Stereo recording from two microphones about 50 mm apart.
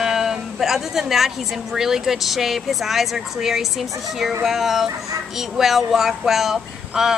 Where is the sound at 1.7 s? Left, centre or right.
Centre.